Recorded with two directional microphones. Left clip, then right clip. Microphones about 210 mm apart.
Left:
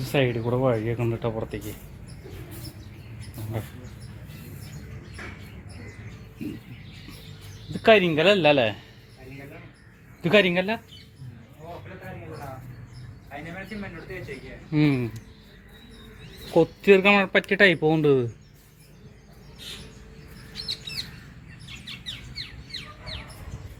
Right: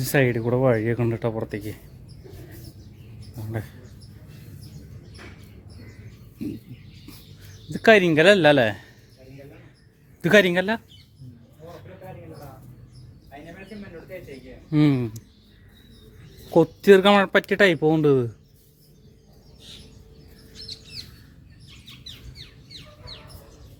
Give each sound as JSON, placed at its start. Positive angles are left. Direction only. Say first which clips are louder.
{"t": 0.0, "sound": "speech", "louder": "right 3 dB", "side_deg": -45}
{"t": 7.8, "sound": "speech", "louder": "right 2 dB", "side_deg": -45}
{"t": 10.2, "sound": "speech", "louder": "right 3 dB", "side_deg": -45}
{"t": 14.7, "sound": "speech", "louder": "right 2 dB", "side_deg": -30}
{"t": 16.6, "sound": "speech", "louder": "right 3 dB", "side_deg": -35}